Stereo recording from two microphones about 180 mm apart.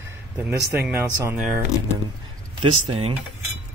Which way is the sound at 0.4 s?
15° right (ahead or behind).